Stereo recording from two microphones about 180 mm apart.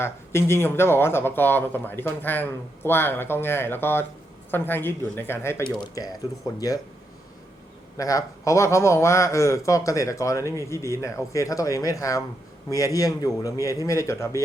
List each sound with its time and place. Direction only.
0.0 s a man's voice: 15° left (ahead or behind)
7.9 s a man's voice: 20° left (ahead or behind)